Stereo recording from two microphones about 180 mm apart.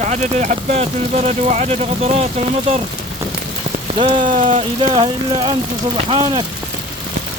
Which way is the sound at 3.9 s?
30° right (ahead or behind).